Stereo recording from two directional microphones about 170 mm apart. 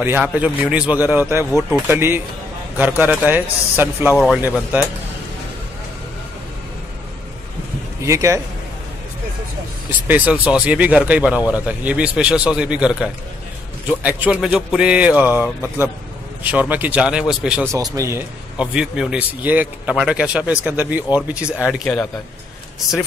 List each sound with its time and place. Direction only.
0.0 s a man's voice: 10° right (ahead or behind)
8.0 s a man's voice: 15° right (ahead or behind)
10.0 s a man's voice: 10° right (ahead or behind)
16.4 s a man's voice: 10° right (ahead or behind)
17.7 s a man's voice: 20° right (ahead or behind)
18.6 s a man's voice: 5° right (ahead or behind)